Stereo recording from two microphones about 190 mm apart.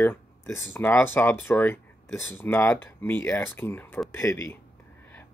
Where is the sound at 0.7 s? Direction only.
10° left (ahead or behind).